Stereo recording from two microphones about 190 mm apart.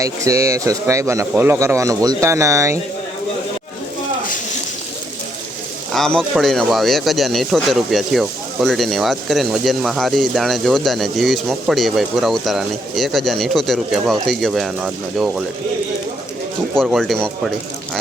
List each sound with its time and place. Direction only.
0.0 s speech: 15° right (ahead or behind)
5.9 s speech: centre (ahead or behind)
16.7 s speech: centre (ahead or behind)